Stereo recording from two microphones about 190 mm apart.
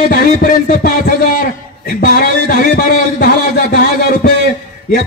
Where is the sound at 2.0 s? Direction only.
50° left (ahead or behind).